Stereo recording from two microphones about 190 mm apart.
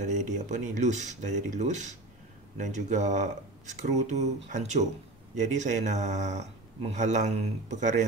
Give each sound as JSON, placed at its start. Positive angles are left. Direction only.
{"t": 0.0, "sound": "speech", "side_deg": -40}